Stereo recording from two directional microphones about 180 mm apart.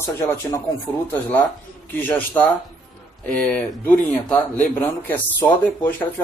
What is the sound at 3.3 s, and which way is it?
A man's voice, 5° left (ahead or behind).